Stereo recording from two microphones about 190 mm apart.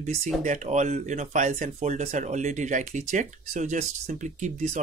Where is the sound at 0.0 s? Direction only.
40° right (ahead or behind).